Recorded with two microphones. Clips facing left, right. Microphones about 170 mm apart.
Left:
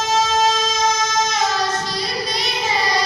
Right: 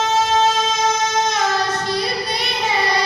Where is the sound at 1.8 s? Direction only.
60° right (ahead or behind).